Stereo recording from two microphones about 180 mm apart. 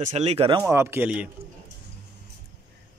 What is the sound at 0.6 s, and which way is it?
Speech, 15° right (ahead or behind).